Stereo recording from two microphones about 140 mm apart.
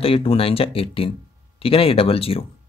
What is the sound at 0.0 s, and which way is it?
Speech, 40° left (ahead or behind).